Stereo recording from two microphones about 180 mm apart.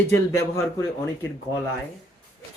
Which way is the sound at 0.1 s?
15° left (ahead or behind).